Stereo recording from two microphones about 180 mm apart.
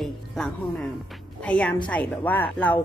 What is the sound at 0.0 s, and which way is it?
Music, centre (ahead or behind).